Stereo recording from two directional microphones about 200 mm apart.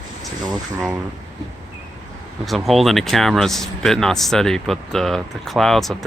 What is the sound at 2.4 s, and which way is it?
Speech, centre (ahead or behind).